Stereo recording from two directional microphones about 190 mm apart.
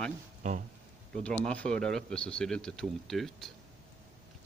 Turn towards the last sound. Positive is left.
turn(degrees=0)  # may be behind; listen again after turning